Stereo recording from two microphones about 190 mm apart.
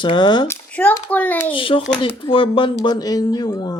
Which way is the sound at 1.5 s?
25° left (ahead or behind).